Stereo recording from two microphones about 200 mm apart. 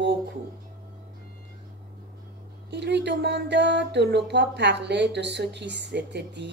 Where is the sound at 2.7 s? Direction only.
60° right (ahead or behind).